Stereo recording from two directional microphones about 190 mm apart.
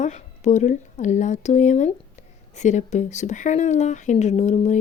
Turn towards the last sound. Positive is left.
turn(degrees=35)  # may be behind; listen again after turning